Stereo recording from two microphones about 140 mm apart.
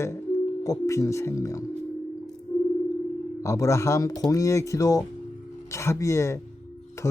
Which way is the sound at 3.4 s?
20° left (ahead or behind).